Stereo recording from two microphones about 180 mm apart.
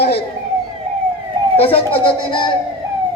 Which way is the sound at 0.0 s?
65° left (ahead or behind).